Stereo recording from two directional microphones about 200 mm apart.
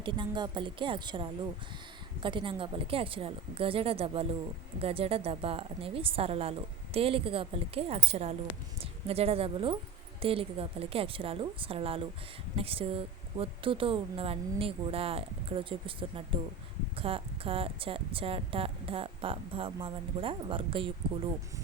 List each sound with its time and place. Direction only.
0.0 s a woman's voice: 25° right (ahead or behind)